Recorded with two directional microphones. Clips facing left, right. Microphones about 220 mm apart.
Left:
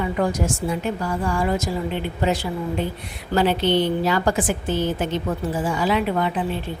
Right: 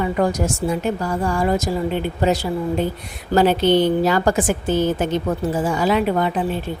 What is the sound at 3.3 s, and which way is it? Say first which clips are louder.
A woman's voice: right 4 dB; 45° right (ahead or behind).